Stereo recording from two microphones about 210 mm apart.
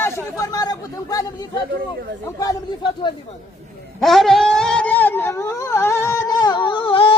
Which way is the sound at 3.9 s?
Centre (ahead or behind).